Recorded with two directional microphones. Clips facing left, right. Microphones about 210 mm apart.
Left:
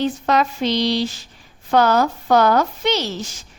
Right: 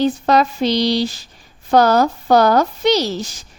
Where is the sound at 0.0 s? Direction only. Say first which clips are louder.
Right 4 dB; 35° right (ahead or behind).